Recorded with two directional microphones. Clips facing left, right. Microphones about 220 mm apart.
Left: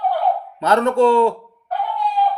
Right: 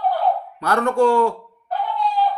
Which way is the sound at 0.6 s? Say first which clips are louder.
Left 2 dB; 20° left (ahead or behind).